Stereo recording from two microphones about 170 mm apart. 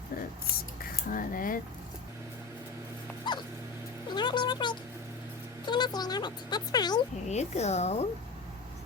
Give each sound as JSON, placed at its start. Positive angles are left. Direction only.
{"t": 1.0, "sound": "speech", "side_deg": 55}
{"t": 3.3, "sound": "dog", "side_deg": 25}
{"t": 4.1, "sound": "music", "side_deg": 25}
{"t": 5.6, "sound": "speech", "side_deg": 25}
{"t": 7.3, "sound": "a woman's voice", "side_deg": 40}